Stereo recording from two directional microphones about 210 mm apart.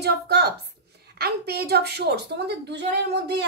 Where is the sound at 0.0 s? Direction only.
50° right (ahead or behind).